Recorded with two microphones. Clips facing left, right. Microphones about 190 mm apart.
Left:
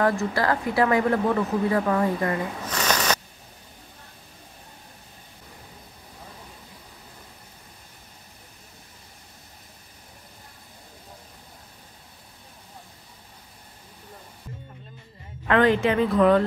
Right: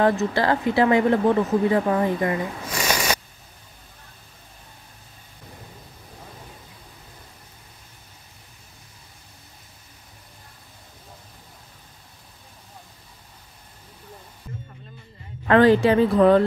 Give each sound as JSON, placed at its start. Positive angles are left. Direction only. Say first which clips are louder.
{"t": 0.0, "sound": "speech", "louder": "right 3 dB", "side_deg": -25}
{"t": 15.4, "sound": "speech", "louder": "right 4 dB", "side_deg": -35}